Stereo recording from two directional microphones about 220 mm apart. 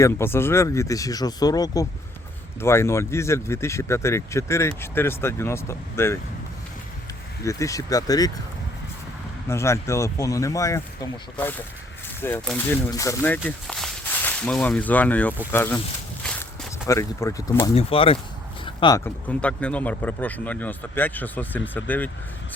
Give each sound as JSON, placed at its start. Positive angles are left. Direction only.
{"t": 0.0, "sound": "speech", "side_deg": 10}
{"t": 7.4, "sound": "speech", "side_deg": 15}
{"t": 9.5, "sound": "speech", "side_deg": 10}
{"t": 16.2, "sound": "a sound", "side_deg": 10}
{"t": 17.7, "sound": "speech", "side_deg": 25}